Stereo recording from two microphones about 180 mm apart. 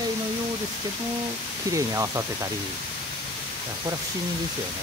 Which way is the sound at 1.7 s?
15° right (ahead or behind).